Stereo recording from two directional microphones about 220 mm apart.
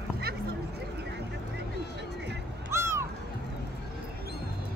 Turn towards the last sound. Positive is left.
turn(degrees=-10)  # may be behind; listen again after turning